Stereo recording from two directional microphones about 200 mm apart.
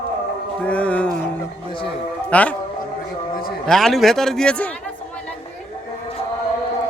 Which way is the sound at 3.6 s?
Centre (ahead or behind).